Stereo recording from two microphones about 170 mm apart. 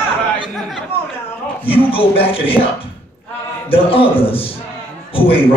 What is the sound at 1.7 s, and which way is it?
A man's voice, 35° left (ahead or behind).